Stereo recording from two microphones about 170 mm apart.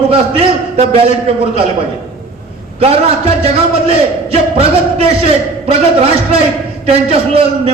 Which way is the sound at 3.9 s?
35° right (ahead or behind).